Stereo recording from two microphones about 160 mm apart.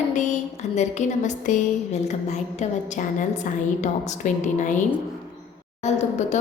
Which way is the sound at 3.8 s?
50° left (ahead or behind).